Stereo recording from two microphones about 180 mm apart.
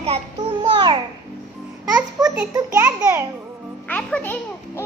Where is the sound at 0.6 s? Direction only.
25° right (ahead or behind).